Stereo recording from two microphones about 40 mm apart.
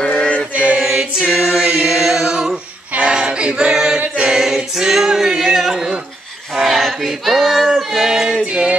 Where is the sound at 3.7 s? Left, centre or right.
Centre.